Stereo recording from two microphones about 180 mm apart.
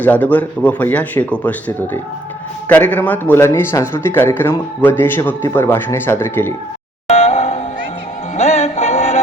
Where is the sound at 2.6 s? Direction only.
10° left (ahead or behind).